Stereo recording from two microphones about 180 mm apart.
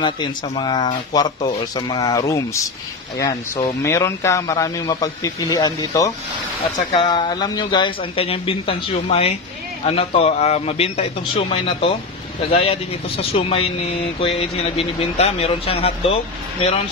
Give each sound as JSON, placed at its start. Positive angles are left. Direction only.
{"t": 0.0, "sound": "a man's voice", "side_deg": 25}